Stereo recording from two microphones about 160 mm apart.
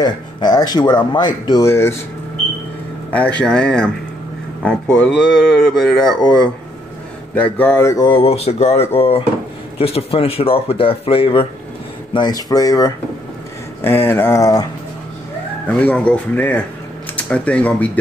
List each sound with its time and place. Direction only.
0.0 s speech: 25° left (ahead or behind)
3.3 s speech: 5° left (ahead or behind)
8.0 s speech: 35° left (ahead or behind)
15.6 s speech: 10° left (ahead or behind)